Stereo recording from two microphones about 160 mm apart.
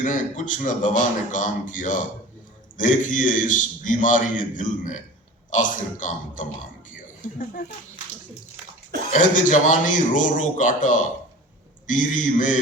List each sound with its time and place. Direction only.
0.0 s a man's voice: 55° left (ahead or behind)
9.1 s a man's voice: 55° left (ahead or behind)